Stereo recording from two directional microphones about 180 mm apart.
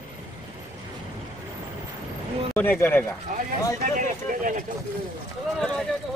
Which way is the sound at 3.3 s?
45° right (ahead or behind).